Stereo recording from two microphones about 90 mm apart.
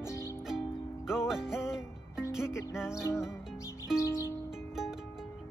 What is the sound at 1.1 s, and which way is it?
Music, 5° right (ahead or behind).